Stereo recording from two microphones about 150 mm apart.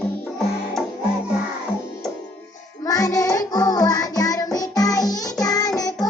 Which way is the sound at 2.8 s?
25° left (ahead or behind).